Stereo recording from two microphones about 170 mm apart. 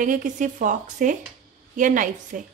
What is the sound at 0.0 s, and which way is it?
A woman's voice, 50° right (ahead or behind).